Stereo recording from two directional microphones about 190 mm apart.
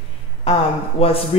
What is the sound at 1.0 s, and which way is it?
Speech, 30° left (ahead or behind).